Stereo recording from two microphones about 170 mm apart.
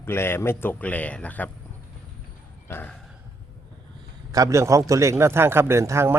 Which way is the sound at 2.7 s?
15° left (ahead or behind).